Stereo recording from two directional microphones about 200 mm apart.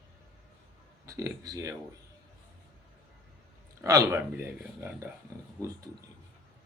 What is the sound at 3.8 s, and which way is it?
Speech, 15° right (ahead or behind).